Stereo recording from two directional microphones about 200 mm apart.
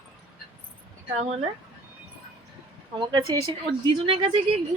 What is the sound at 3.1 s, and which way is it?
Speech, 25° right (ahead or behind).